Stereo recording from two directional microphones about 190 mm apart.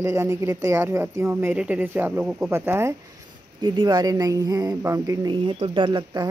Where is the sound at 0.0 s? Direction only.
15° right (ahead or behind).